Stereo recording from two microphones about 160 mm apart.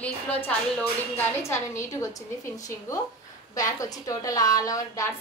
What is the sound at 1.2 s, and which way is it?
A woman's voice, 15° left (ahead or behind).